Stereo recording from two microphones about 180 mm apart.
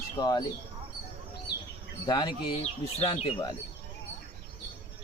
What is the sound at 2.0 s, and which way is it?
Speech, 20° left (ahead or behind).